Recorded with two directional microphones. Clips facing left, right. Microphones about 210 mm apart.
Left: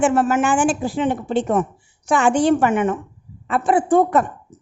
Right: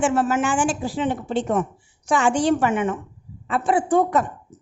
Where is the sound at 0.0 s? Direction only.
55° left (ahead or behind).